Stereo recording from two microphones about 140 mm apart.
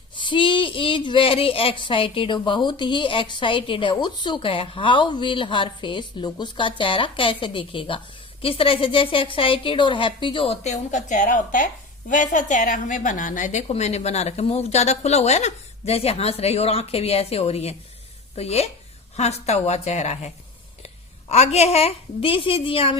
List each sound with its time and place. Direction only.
0.2 s a woman's voice: 35° left (ahead or behind)